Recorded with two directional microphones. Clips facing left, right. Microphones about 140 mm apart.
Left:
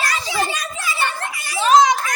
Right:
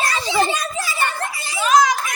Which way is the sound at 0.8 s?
40° right (ahead or behind).